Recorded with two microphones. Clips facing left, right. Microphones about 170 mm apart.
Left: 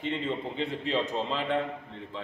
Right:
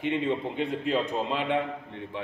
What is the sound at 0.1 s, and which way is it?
A man's voice, 10° right (ahead or behind).